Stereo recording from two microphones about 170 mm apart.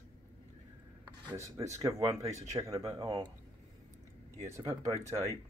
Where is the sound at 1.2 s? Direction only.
20° right (ahead or behind).